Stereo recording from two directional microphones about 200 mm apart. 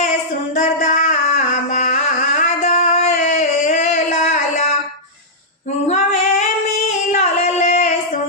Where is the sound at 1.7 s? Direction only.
40° left (ahead or behind).